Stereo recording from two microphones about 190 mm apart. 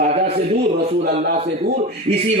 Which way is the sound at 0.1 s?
35° right (ahead or behind).